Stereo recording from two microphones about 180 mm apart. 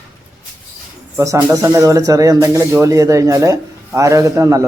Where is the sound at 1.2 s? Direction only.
15° right (ahead or behind).